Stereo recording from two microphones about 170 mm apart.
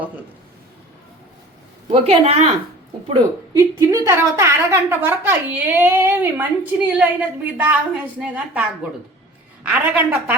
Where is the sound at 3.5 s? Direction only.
20° right (ahead or behind).